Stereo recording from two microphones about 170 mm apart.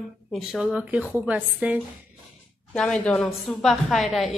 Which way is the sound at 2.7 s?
5° left (ahead or behind).